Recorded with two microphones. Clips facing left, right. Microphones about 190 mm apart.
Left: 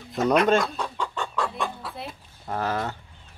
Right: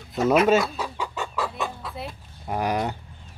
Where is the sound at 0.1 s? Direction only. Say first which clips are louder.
Right 2 dB; centre (ahead or behind).